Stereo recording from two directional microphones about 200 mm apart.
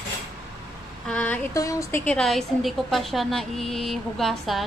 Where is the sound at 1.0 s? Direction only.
5° left (ahead or behind).